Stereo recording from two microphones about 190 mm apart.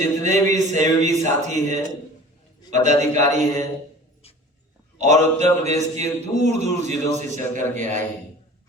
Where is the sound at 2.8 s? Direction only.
40° right (ahead or behind).